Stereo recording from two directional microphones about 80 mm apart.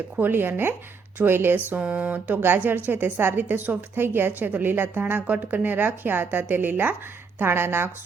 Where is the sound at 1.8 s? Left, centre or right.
Centre.